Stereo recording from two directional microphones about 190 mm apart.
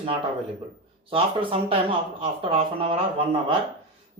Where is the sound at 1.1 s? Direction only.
30° right (ahead or behind).